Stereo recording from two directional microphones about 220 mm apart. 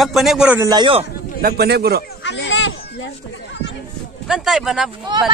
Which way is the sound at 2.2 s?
50° left (ahead or behind).